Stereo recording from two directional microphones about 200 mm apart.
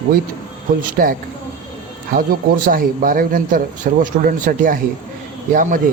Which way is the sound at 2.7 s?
45° right (ahead or behind).